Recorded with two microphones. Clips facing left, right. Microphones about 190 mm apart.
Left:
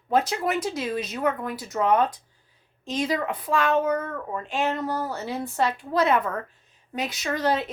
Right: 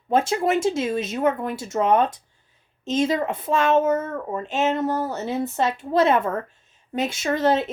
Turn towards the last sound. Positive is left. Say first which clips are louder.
# right 4 dB
turn(degrees=-25)  # may be behind; listen again after turning